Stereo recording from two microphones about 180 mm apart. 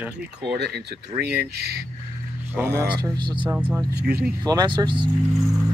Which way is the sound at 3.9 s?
65° right (ahead or behind).